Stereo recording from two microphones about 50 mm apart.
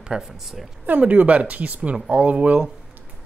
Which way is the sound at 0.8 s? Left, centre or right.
Right.